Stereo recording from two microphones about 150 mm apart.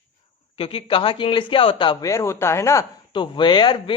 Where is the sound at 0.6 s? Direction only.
40° left (ahead or behind).